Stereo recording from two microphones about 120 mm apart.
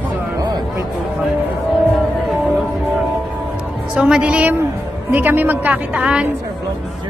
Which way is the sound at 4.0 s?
10° right (ahead or behind).